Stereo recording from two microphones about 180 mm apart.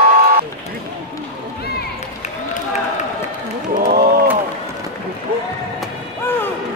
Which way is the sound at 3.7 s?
55° right (ahead or behind).